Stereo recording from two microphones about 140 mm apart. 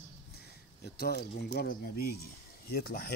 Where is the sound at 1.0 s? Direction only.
90° left.